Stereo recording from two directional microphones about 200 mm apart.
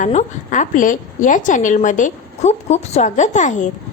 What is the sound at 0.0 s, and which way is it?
A woman's voice, 35° left (ahead or behind).